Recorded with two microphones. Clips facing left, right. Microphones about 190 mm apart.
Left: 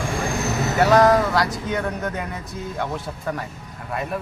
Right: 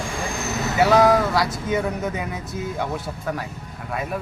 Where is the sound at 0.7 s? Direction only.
5° right (ahead or behind).